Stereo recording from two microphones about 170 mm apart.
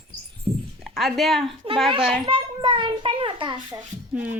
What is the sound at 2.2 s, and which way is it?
A child's voice, 30° right (ahead or behind).